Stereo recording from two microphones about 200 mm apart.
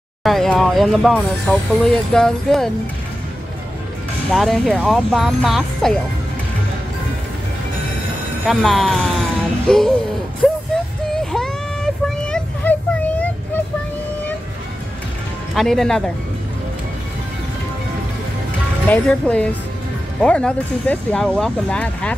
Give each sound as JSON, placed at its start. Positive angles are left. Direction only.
{"t": 0.2, "sound": "speech", "side_deg": 0}
{"t": 4.3, "sound": "speech", "side_deg": 0}
{"t": 8.5, "sound": "speech", "side_deg": 0}
{"t": 10.4, "sound": "a sound", "side_deg": 0}
{"t": 15.5, "sound": "speech", "side_deg": 0}
{"t": 18.9, "sound": "speech", "side_deg": 5}